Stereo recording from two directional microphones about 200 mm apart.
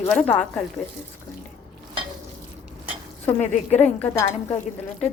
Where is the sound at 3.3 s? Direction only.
35° left (ahead or behind).